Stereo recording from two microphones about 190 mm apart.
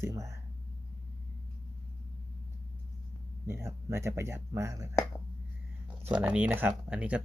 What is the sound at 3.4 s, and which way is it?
Speech, 15° right (ahead or behind).